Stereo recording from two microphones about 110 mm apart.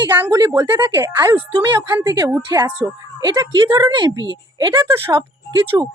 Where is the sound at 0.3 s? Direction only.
35° right (ahead or behind).